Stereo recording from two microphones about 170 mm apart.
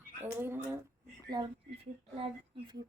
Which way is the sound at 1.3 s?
25° right (ahead or behind).